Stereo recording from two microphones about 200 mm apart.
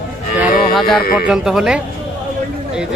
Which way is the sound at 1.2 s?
5° right (ahead or behind).